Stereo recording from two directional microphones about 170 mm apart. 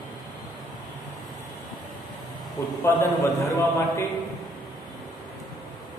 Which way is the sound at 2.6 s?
15° left (ahead or behind).